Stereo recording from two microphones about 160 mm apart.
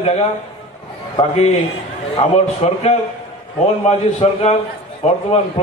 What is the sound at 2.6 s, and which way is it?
Speech, 45° left (ahead or behind).